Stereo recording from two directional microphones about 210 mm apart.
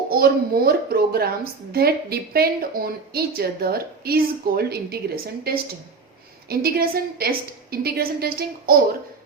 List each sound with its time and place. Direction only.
0.1 s a woman's voice: 45° right (ahead or behind)